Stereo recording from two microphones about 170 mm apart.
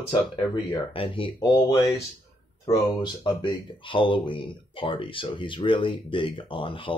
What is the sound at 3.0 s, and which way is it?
Speech, 25° left (ahead or behind).